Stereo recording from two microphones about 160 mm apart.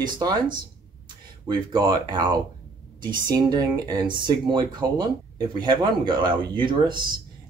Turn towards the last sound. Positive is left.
turn(degrees=-30)  # may be behind; listen again after turning